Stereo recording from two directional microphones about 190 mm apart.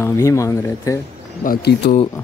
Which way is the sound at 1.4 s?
60° left (ahead or behind).